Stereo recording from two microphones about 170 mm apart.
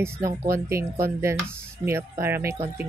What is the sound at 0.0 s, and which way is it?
Speech, 15° right (ahead or behind).